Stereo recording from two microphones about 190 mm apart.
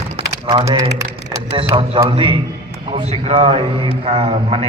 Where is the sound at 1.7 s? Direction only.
20° right (ahead or behind).